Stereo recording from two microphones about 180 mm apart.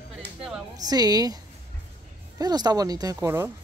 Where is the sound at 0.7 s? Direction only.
20° right (ahead or behind).